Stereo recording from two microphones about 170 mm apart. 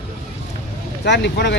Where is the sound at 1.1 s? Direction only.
85° left.